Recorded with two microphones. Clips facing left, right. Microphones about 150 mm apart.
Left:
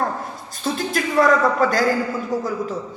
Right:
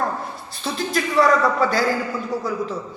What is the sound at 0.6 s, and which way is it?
A woman's voice, 45° left (ahead or behind).